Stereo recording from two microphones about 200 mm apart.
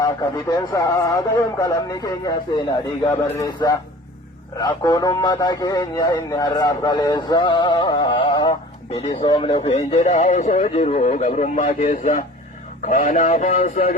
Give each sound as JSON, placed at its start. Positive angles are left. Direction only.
{"t": 0.0, "sound": "a man's voice", "side_deg": 15}